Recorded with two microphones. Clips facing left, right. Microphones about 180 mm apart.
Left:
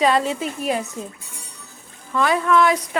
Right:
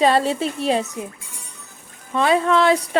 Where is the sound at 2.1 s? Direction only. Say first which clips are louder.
Right 1 dB; 25° right (ahead or behind).